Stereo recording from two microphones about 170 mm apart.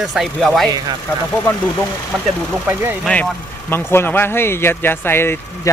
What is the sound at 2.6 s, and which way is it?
Speech, 15° right (ahead or behind).